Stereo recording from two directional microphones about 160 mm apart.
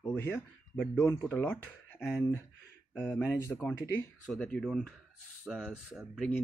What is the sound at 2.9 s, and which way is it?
Speech, 5° left (ahead or behind).